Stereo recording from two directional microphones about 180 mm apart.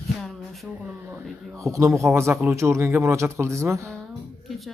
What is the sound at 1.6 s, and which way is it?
Speech, 15° right (ahead or behind).